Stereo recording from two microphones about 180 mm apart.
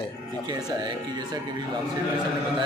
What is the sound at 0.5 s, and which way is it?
Speech, 20° right (ahead or behind).